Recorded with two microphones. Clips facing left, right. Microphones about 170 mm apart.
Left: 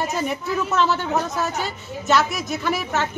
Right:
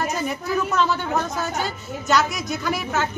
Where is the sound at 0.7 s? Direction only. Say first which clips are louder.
Left 4 dB; 5° left (ahead or behind).